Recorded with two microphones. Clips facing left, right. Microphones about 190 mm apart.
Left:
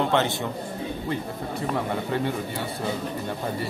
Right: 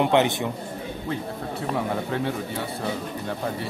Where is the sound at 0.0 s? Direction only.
15° right (ahead or behind).